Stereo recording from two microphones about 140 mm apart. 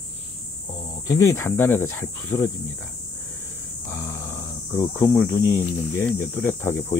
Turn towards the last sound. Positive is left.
turn(degrees=15)  # may be behind; listen again after turning